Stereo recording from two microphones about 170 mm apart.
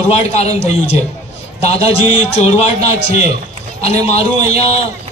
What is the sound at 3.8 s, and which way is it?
Speech, 40° left (ahead or behind).